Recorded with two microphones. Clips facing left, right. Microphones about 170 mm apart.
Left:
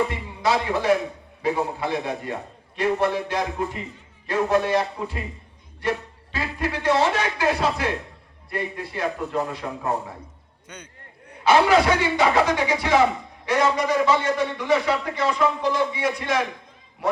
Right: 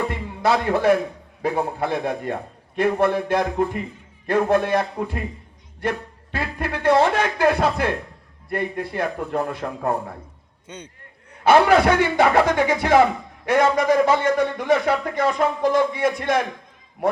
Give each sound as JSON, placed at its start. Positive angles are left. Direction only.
{"t": 0.1, "sound": "speech", "side_deg": -55}
{"t": 10.7, "sound": "a man's voice", "side_deg": -25}
{"t": 11.4, "sound": "speech", "side_deg": -55}